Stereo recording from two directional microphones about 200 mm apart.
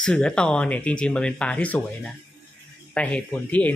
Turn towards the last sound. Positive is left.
turn(degrees=5)  # may be behind; listen again after turning